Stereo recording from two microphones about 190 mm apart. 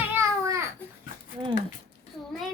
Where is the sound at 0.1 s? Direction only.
15° right (ahead or behind).